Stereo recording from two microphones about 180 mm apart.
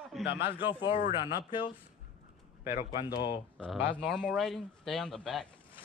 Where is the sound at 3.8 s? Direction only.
5° left (ahead or behind).